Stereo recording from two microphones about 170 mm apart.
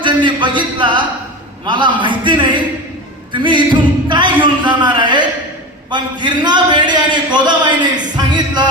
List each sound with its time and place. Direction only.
0.0 s a man's voice: 30° right (ahead or behind)